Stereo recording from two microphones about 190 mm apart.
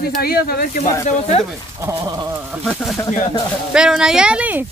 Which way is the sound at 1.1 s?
35° left (ahead or behind).